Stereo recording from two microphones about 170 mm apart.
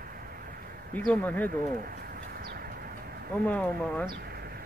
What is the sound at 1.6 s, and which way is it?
Bird, 55° right (ahead or behind).